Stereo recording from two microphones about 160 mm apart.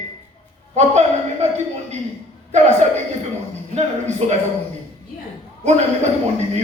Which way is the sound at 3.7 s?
45° right (ahead or behind).